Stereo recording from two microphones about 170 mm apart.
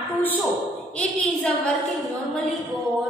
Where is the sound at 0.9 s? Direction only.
5° left (ahead or behind).